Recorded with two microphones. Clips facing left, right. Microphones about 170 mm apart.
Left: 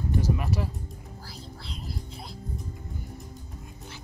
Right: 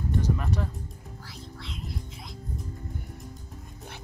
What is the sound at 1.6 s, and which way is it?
Music, 35° left (ahead or behind).